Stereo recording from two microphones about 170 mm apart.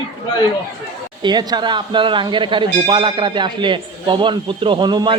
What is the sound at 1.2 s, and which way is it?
Speech, 25° right (ahead or behind).